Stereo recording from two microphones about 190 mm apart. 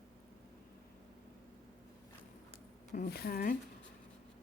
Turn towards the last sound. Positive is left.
turn(degrees=55)  # may be behind; listen again after turning